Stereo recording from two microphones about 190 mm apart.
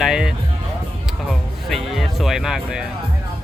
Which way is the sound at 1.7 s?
Centre (ahead or behind).